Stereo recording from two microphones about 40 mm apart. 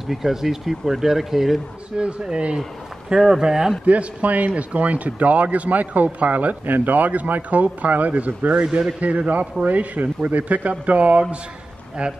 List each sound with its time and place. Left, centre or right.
0.1 s speech: centre
2.0 s speech: right
3.8 s speech: right